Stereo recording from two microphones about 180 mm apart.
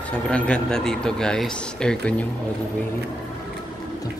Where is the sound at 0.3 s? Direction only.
5° left (ahead or behind).